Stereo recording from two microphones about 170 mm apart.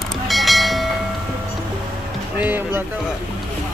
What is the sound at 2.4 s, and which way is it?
Speech, 10° right (ahead or behind).